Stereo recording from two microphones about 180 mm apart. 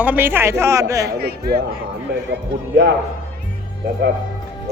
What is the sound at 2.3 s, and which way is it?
Speech, 80° right.